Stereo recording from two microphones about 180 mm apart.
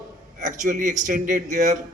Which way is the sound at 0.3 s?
45° right (ahead or behind).